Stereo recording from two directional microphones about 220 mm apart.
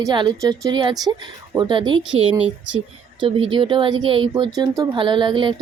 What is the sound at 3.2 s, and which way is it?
Speech, 25° right (ahead or behind).